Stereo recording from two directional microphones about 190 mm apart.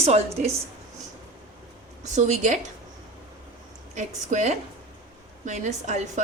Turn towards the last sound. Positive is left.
turn(degrees=-40)  # may be behind; listen again after turning